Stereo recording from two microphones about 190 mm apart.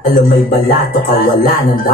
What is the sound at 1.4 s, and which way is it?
Music, 50° left (ahead or behind).